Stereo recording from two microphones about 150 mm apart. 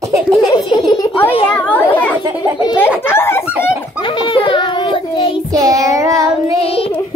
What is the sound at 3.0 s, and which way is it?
Speech, 15° left (ahead or behind).